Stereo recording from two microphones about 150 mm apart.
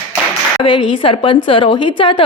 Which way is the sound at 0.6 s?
30° left (ahead or behind).